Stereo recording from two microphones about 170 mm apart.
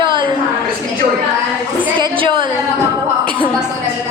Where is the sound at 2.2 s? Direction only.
30° right (ahead or behind).